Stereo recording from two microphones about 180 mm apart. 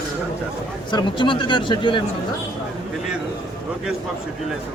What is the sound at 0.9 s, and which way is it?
A man's voice, 25° left (ahead or behind).